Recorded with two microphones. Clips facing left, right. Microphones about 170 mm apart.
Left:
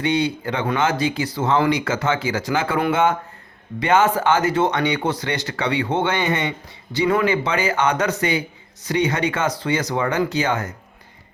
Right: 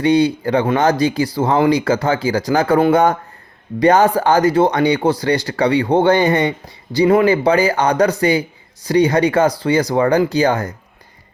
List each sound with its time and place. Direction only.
0.0 s a man's voice: 35° right (ahead or behind)